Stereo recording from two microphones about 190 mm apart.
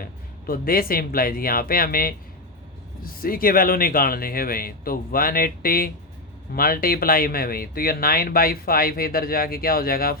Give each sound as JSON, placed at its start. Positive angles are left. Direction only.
{"t": 0.0, "sound": "speech", "side_deg": 50}